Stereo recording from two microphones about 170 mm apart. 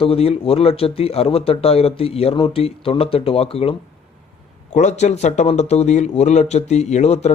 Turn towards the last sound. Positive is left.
turn(degrees=40)  # may be behind; listen again after turning